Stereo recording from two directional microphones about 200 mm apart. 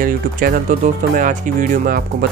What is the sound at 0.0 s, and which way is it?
Speech, 45° right (ahead or behind).